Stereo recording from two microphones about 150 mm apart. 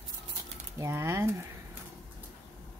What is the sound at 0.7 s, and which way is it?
Speech, 20° right (ahead or behind).